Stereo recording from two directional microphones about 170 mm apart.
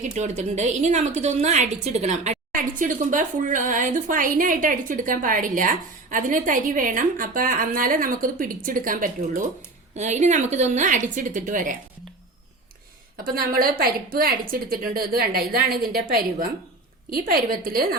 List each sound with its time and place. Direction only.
0.0 s a woman's voice: 40° right (ahead or behind)
13.2 s a woman's voice: 60° right (ahead or behind)